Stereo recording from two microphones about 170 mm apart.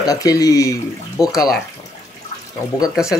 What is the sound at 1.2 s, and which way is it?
Speech, 5° right (ahead or behind).